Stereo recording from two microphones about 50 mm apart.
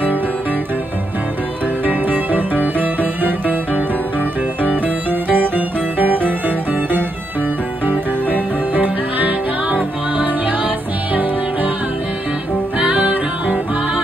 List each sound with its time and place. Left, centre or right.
1.9 s music: right
4.8 s music: right
8.7 s music: right
12.7 s music: right